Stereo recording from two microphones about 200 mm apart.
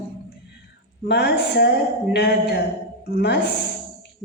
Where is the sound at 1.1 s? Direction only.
50° left (ahead or behind).